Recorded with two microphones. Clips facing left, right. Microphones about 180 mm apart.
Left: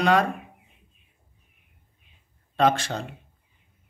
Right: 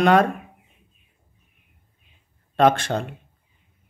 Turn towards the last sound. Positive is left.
turn(degrees=-55)  # may be behind; listen again after turning